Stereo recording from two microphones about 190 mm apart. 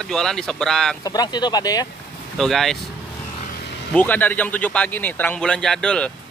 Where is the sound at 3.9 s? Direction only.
10° left (ahead or behind).